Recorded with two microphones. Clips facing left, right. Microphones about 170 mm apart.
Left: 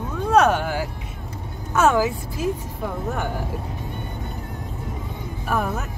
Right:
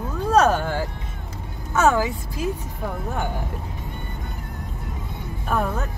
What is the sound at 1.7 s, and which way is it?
Speech, 10° left (ahead or behind).